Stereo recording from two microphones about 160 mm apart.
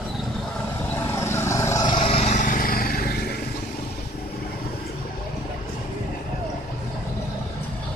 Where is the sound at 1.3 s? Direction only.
15° left (ahead or behind).